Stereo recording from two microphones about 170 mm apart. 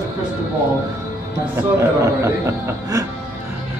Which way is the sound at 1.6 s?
15° right (ahead or behind).